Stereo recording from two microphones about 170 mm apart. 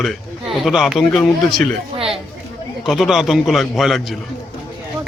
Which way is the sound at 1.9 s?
35° right (ahead or behind).